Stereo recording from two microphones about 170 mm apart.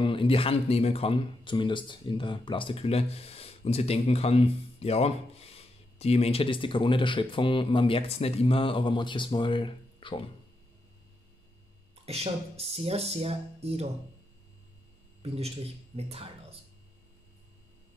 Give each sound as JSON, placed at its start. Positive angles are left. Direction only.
{"t": 0.0, "sound": "speech", "side_deg": 30}
{"t": 11.9, "sound": "speech", "side_deg": -35}
{"t": 15.2, "sound": "speech", "side_deg": -35}